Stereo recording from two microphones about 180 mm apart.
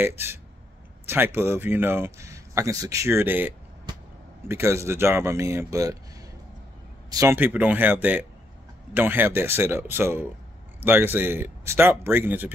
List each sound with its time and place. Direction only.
1.0 s a man's voice: 10° right (ahead or behind)
7.1 s a man's voice: 15° right (ahead or behind)